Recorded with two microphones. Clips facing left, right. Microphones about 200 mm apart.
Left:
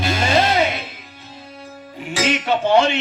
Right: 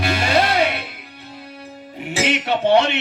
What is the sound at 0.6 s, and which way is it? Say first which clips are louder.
Music: even; 65° right (ahead or behind).